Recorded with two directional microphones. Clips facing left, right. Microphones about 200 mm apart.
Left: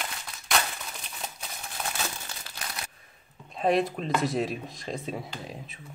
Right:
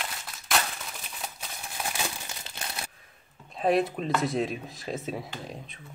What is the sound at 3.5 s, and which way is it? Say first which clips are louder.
Speech: even; centre (ahead or behind).